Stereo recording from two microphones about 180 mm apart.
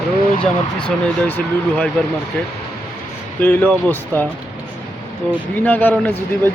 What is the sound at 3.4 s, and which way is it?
Speech, 10° left (ahead or behind).